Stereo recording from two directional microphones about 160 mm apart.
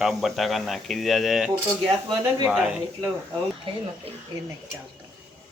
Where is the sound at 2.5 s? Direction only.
5° right (ahead or behind).